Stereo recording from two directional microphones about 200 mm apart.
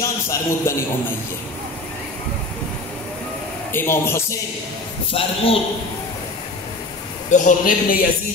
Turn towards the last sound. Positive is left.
turn(degrees=40)  # may be behind; listen again after turning